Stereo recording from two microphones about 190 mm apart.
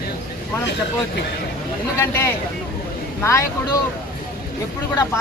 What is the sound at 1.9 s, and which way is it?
Speech, 15° left (ahead or behind).